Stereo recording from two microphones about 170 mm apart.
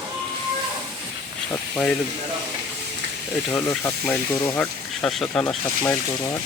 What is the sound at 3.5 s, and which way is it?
Speech, 15° left (ahead or behind).